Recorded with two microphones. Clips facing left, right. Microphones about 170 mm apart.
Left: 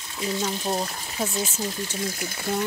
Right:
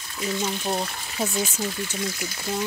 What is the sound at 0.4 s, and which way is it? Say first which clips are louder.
Speech: even; 5° right (ahead or behind).